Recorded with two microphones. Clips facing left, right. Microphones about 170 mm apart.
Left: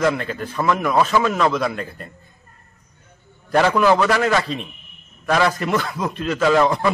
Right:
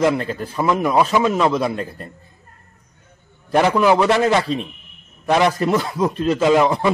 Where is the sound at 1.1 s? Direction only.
15° right (ahead or behind).